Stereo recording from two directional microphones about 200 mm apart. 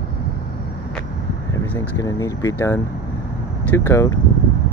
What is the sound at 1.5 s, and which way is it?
Speech, 15° left (ahead or behind).